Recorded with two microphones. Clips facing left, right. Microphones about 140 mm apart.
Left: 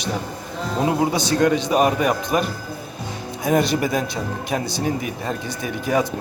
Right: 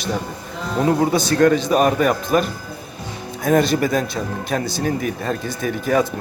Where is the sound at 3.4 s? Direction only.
20° left (ahead or behind).